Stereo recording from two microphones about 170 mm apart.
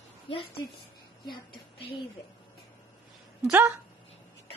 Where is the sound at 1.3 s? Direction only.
30° left (ahead or behind).